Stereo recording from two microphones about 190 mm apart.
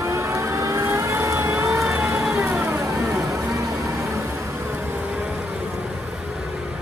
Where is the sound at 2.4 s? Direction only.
15° right (ahead or behind).